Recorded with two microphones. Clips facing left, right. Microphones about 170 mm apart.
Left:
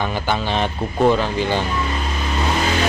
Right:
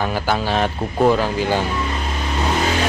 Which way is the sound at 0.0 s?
5° right (ahead or behind).